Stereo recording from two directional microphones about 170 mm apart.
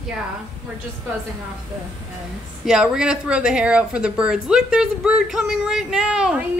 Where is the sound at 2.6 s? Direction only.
5° right (ahead or behind).